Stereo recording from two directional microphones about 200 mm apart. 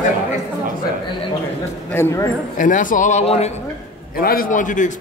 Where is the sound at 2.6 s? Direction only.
40° left (ahead or behind).